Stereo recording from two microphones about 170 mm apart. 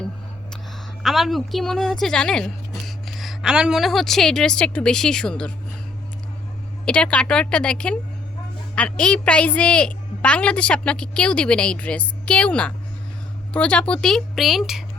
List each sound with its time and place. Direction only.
1.0 s speech: centre (ahead or behind)
6.8 s a woman's voice: 5° left (ahead or behind)